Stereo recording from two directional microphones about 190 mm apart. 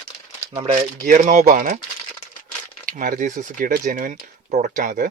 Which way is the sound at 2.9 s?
45° right (ahead or behind).